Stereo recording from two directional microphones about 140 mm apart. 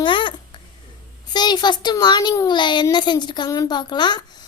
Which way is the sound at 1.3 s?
30° left (ahead or behind).